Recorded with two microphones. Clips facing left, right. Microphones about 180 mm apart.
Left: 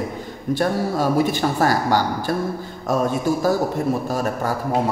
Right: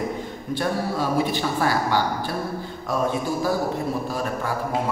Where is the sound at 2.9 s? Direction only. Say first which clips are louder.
Left 5 dB; 40° left (ahead or behind).